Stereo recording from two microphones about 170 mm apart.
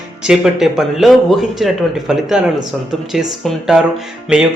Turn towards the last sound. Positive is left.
turn(degrees=-5)  # may be behind; listen again after turning